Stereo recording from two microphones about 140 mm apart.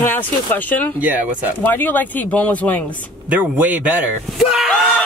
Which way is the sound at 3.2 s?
10° right (ahead or behind).